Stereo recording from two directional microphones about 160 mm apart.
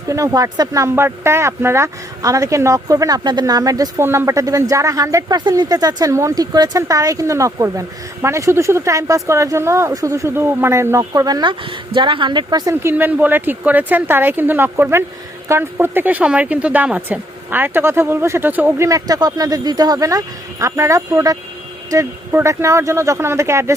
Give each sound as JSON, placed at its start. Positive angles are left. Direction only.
{"t": 0.1, "sound": "speech", "side_deg": -20}